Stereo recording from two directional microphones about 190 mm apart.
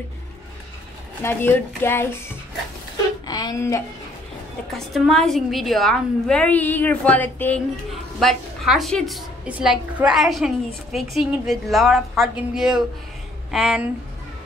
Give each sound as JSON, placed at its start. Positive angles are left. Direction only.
{"t": 1.2, "sound": "speech", "side_deg": 10}
{"t": 4.7, "sound": "a woman's voice", "side_deg": 0}